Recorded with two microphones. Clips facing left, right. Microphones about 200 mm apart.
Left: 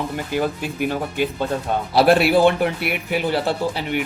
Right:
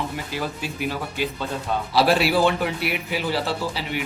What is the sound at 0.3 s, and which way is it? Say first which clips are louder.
Speech: left 6 dB; 55° left (ahead or behind).